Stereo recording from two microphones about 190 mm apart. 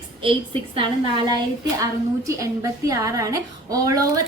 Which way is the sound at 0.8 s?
25° right (ahead or behind).